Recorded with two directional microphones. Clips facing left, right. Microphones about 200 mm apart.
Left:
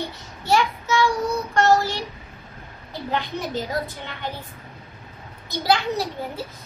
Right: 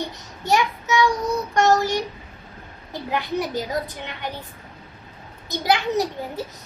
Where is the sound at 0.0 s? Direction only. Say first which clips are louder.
Right 1 dB; 15° right (ahead or behind).